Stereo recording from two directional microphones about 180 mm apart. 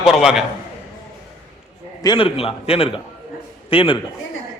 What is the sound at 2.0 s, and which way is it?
A man's voice, 25° left (ahead or behind).